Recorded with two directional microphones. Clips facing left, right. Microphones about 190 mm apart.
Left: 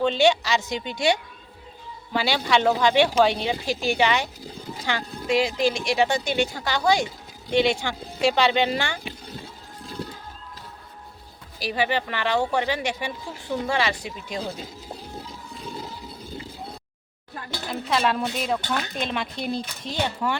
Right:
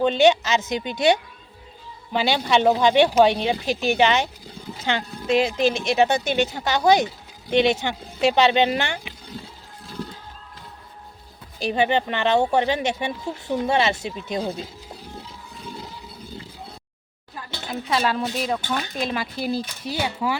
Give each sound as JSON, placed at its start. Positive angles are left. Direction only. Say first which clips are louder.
{"t": 0.0, "sound": "speech", "louder": "right 3 dB", "side_deg": -20}
{"t": 11.6, "sound": "speech", "louder": "right 4 dB", "side_deg": -25}
{"t": 17.7, "sound": "speech", "louder": "even", "side_deg": 0}